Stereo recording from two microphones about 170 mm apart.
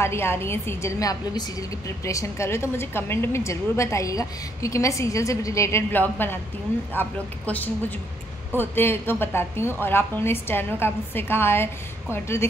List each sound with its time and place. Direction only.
0.0 s a woman's voice: 15° left (ahead or behind)